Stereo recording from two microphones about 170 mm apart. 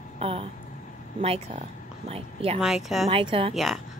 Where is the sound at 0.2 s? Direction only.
35° right (ahead or behind).